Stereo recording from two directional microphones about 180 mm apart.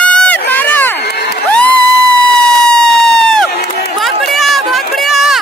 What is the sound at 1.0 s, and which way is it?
Crowd, 70° left (ahead or behind).